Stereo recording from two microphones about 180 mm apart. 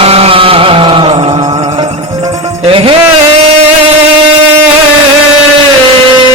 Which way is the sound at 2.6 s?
30° right (ahead or behind).